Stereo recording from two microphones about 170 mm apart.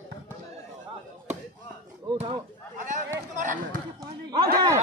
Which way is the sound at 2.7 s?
50° right (ahead or behind).